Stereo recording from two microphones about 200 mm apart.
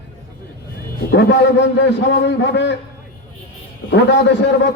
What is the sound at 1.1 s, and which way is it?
A man's voice, 55° left (ahead or behind).